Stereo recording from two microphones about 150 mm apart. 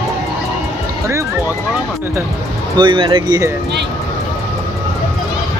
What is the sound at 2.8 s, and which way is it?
Speech, 35° right (ahead or behind).